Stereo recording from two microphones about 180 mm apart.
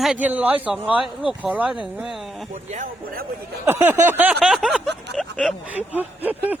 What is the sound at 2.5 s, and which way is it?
Speech, 40° right (ahead or behind).